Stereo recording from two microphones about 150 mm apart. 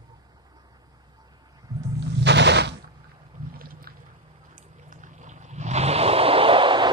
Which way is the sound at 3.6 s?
75° right (ahead or behind).